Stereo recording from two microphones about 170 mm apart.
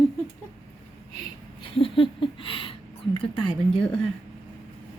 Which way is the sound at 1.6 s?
30° left (ahead or behind).